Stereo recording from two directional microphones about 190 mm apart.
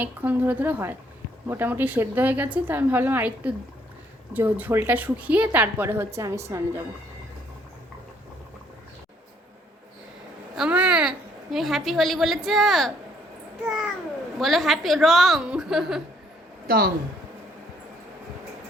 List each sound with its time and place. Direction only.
0.0 s a woman's voice: 10° right (ahead or behind)
10.5 s a woman's voice: 5° right (ahead or behind)
16.6 s speech: 50° right (ahead or behind)